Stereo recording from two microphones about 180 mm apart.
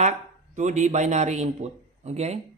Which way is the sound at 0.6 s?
40° right (ahead or behind).